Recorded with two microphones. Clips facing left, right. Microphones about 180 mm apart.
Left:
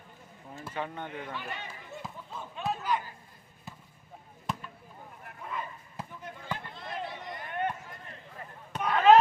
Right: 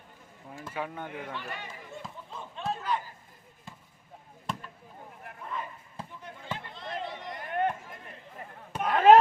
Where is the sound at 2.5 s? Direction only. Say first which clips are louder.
Left 1 dB; 5° left (ahead or behind).